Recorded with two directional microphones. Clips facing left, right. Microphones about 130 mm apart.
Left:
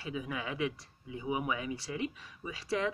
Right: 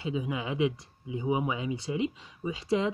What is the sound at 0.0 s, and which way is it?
Speech, 20° right (ahead or behind).